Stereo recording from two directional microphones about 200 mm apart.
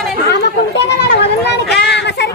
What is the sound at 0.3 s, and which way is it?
Chatter, 55° left (ahead or behind).